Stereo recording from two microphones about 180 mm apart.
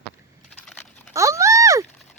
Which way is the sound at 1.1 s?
15° right (ahead or behind).